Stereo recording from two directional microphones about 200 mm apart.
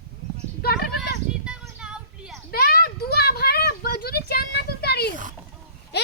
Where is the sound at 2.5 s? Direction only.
50° left (ahead or behind).